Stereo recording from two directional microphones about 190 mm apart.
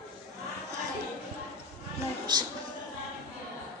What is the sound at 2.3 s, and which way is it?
Speech, 25° right (ahead or behind).